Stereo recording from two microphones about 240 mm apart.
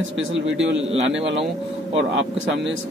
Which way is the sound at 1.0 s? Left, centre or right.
Right.